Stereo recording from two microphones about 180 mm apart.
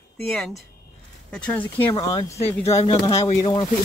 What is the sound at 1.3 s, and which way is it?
Speech, 5° left (ahead or behind).